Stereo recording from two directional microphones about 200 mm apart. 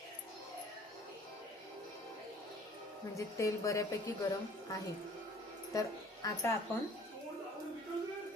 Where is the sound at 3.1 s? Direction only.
15° left (ahead or behind).